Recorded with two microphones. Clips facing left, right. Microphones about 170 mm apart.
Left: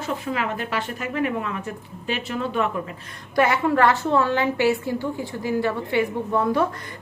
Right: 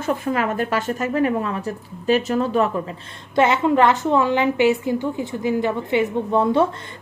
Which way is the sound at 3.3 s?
20° right (ahead or behind).